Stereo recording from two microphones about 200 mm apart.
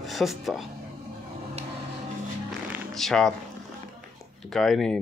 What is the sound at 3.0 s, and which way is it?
Speech, centre (ahead or behind).